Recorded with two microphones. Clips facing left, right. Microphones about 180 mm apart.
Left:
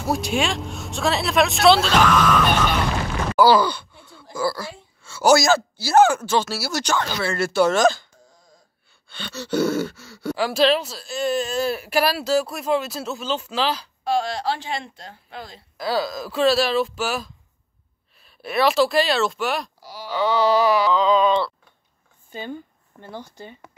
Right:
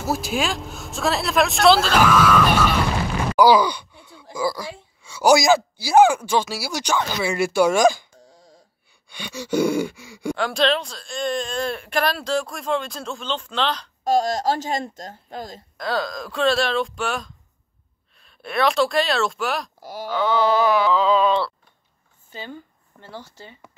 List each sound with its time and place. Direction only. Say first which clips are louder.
0.0 s speech: left 1 dB; centre (ahead or behind)
9.1 s gasp: right 1 dB; 10° right (ahead or behind)
10.3 s speech: left 2 dB; 5° left (ahead or behind)
14.0 s speech: right 3 dB; 40° right (ahead or behind)
15.8 s speech: left 2 dB; 5° left (ahead or behind)
19.8 s speech: right 3 dB; 50° right (ahead or behind)
20.2 s speech: left 1 dB; centre (ahead or behind)
22.3 s speech: left 4 dB; 15° left (ahead or behind)